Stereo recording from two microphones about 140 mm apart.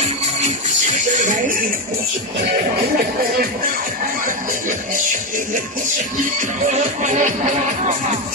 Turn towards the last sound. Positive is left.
turn(degrees=-60)  # may be behind; listen again after turning